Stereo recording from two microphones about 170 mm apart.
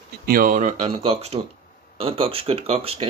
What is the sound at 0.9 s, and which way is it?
Speech, 35° right (ahead or behind).